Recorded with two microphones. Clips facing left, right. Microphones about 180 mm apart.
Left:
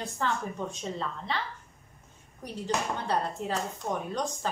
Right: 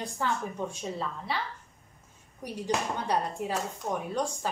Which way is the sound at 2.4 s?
15° right (ahead or behind).